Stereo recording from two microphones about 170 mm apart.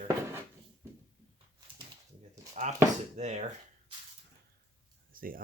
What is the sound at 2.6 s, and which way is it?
Speech, 45° right (ahead or behind).